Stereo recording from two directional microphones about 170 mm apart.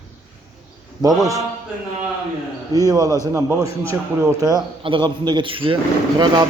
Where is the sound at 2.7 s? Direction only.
20° right (ahead or behind).